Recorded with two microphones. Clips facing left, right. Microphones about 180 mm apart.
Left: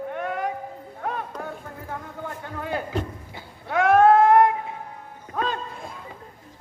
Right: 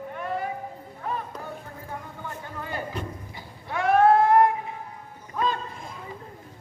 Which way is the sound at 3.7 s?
75° left (ahead or behind).